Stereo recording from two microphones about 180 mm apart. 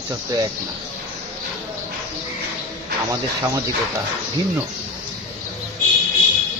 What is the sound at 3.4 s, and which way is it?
Speech, 15° right (ahead or behind).